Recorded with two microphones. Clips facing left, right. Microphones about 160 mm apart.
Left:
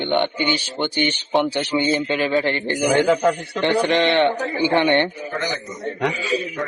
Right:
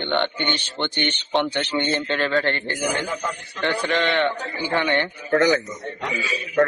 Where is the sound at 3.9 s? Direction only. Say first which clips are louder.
Left 4 dB; 20° left (ahead or behind).